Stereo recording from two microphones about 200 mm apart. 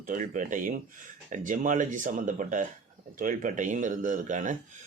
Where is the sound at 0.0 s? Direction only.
40° right (ahead or behind).